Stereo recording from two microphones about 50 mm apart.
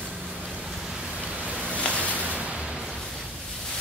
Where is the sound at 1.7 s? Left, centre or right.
Left.